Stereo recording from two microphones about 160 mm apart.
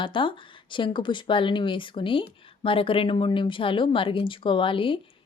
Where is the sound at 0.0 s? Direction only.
30° left (ahead or behind).